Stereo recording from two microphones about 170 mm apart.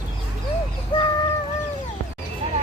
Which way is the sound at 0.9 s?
30° left (ahead or behind).